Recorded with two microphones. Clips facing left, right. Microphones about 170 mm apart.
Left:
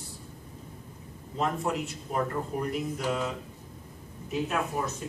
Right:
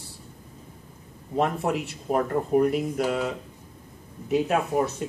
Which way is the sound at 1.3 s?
65° right (ahead or behind).